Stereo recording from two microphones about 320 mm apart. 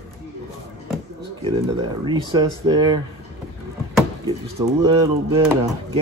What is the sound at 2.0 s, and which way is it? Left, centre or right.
Speech, centre.